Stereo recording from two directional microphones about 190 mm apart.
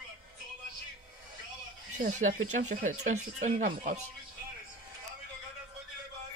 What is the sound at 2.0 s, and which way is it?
Speech, 40° right (ahead or behind).